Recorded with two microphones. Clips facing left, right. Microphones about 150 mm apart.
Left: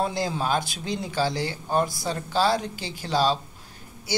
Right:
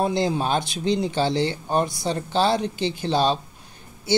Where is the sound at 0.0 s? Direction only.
20° right (ahead or behind).